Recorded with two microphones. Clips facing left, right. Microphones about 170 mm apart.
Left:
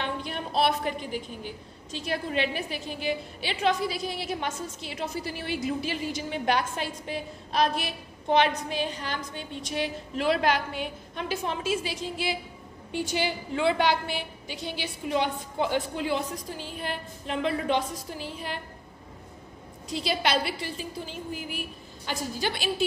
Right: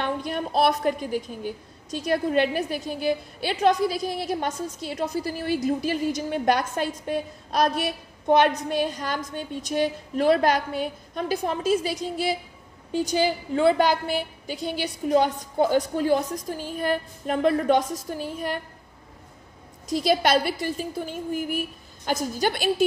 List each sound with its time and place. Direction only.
0.0 s speech: 45° right (ahead or behind)
19.9 s speech: 45° right (ahead or behind)